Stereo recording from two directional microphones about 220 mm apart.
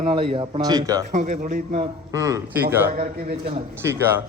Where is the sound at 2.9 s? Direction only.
40° right (ahead or behind).